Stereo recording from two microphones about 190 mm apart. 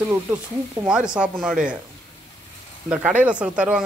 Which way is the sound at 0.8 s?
5° right (ahead or behind).